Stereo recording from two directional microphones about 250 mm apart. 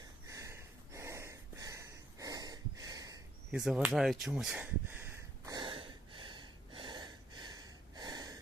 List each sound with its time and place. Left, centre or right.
0.3 s snort: centre
3.5 s speech: centre
5.5 s gasp: centre